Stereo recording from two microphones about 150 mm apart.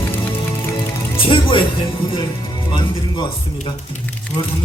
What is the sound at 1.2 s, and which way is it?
Speech, 35° left (ahead or behind).